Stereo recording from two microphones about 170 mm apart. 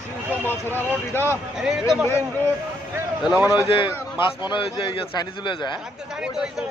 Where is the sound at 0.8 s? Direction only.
10° left (ahead or behind).